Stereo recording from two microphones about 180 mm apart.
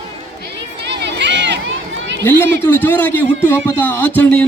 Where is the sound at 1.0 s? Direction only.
75° right (ahead or behind).